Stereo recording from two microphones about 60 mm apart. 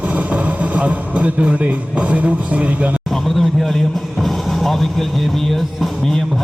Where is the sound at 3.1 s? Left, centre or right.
Centre.